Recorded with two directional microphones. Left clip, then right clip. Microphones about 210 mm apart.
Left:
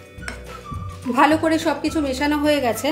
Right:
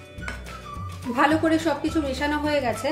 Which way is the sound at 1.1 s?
30° left (ahead or behind).